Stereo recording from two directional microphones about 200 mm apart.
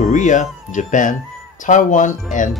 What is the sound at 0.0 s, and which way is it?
Speech, 40° left (ahead or behind).